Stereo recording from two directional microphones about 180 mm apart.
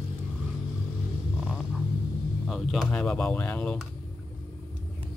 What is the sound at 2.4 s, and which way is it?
Speech, centre (ahead or behind).